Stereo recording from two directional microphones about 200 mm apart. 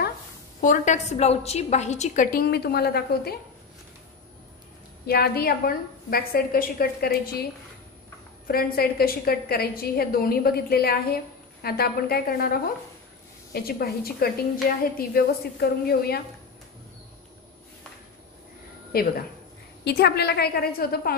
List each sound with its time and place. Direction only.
0.6 s a woman's voice: 40° left (ahead or behind)
5.0 s a woman's voice: 50° left (ahead or behind)
8.5 s a woman's voice: 50° left (ahead or behind)
18.9 s a woman's voice: 50° left (ahead or behind)